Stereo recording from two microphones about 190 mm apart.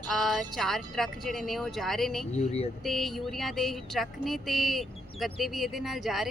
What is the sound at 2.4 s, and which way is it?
Speech, 35° left (ahead or behind).